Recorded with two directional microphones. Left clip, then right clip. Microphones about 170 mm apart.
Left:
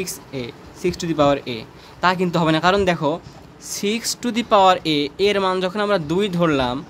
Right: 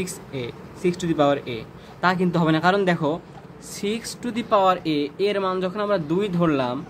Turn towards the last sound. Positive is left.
turn(degrees=25)  # may be behind; listen again after turning